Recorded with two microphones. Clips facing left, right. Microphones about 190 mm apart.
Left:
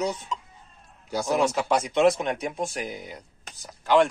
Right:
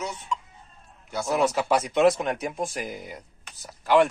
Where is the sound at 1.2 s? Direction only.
5° right (ahead or behind).